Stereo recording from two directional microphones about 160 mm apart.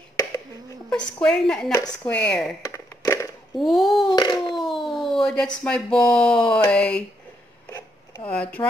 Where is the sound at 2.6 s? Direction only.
20° left (ahead or behind).